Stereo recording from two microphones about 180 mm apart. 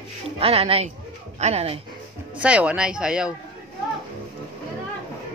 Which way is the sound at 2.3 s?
5° right (ahead or behind).